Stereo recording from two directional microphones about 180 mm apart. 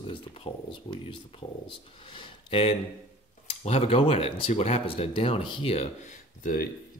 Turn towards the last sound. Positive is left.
turn(degrees=50)  # may be behind; listen again after turning